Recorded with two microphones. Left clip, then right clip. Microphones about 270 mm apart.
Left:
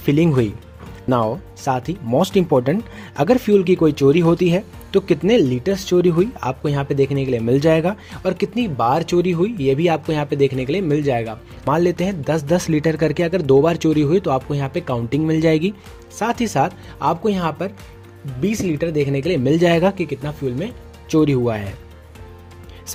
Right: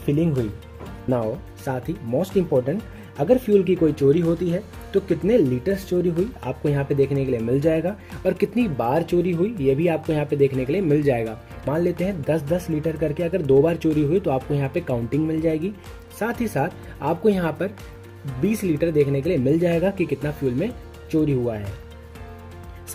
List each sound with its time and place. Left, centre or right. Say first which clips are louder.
0.0 s speech: left 6 dB; left
20.0 s speech: even; centre
21.1 s speech: left 5 dB; left